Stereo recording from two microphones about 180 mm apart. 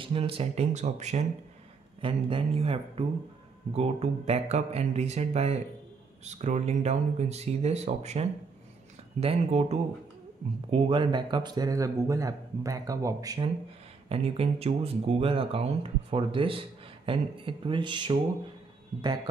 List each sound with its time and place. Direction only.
0.0 s speech: 30° right (ahead or behind)
2.0 s speech: 30° right (ahead or behind)
14.0 s speech: 35° right (ahead or behind)